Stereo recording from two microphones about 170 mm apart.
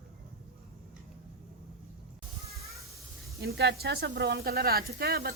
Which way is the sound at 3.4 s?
70° right (ahead or behind).